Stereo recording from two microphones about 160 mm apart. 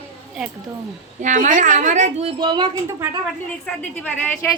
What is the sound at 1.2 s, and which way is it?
A child's voice, 55° right (ahead or behind).